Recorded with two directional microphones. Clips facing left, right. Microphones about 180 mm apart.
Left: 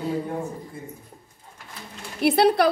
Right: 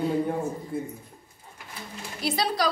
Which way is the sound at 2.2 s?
60° left (ahead or behind).